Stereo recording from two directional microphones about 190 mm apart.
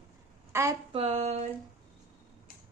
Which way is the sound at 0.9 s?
35° right (ahead or behind).